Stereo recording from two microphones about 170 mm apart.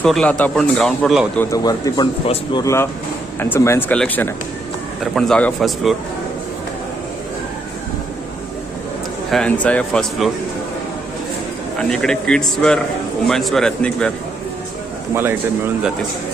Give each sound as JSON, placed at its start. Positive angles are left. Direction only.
{"t": 0.0, "sound": "speech", "side_deg": 5}
{"t": 1.4, "sound": "a man's voice", "side_deg": 20}
{"t": 2.6, "sound": "speech", "side_deg": 15}
{"t": 9.3, "sound": "speech", "side_deg": 5}
{"t": 11.8, "sound": "speech", "side_deg": 5}
{"t": 15.1, "sound": "speech", "side_deg": -15}